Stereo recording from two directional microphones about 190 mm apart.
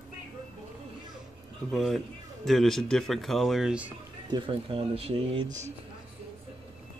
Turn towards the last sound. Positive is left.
turn(degrees=-30)  # may be behind; listen again after turning